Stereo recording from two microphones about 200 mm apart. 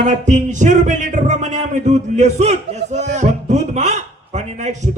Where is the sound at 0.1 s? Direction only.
35° right (ahead or behind).